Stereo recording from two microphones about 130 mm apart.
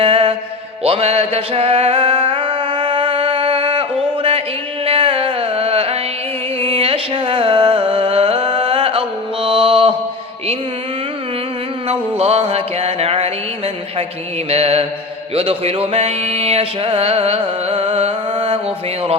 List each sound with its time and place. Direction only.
0.0 s music: 45° right (ahead or behind)
4.9 s carnatic music: 45° right (ahead or behind)
6.6 s music: 45° right (ahead or behind)
11.9 s a sound: 55° right (ahead or behind)
14.5 s mantra: 50° right (ahead or behind)
15.4 s a sound: 50° right (ahead or behind)